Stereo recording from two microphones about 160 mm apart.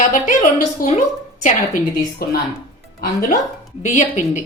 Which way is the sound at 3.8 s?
50° left (ahead or behind).